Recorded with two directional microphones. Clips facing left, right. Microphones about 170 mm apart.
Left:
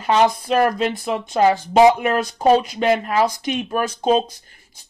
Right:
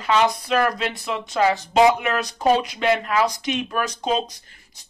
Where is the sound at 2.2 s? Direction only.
45° left (ahead or behind); by 3.9 s 30° left (ahead or behind).